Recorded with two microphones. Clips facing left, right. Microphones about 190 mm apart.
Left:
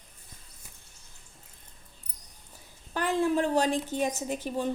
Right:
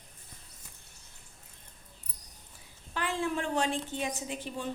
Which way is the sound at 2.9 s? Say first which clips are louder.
Left 6 dB; 40° left (ahead or behind).